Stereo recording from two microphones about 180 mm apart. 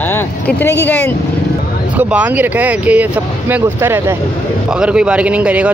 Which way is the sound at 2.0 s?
10° right (ahead or behind).